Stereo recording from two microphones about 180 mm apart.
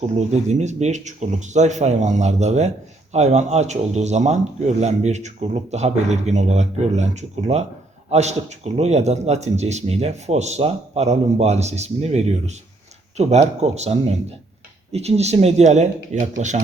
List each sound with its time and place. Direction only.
0.2 s speech: 40° right (ahead or behind)